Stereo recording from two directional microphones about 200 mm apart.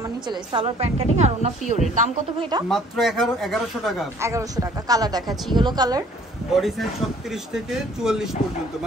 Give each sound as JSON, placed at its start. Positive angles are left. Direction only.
{"t": 0.3, "sound": "a woman's voice", "side_deg": -25}
{"t": 2.7, "sound": "speech", "side_deg": 0}
{"t": 4.2, "sound": "speech", "side_deg": -15}
{"t": 6.5, "sound": "speech", "side_deg": 0}